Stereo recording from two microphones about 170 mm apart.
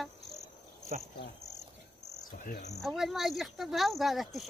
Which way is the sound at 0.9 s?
50° right (ahead or behind).